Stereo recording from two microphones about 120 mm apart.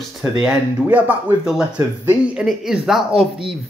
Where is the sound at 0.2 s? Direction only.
5° right (ahead or behind).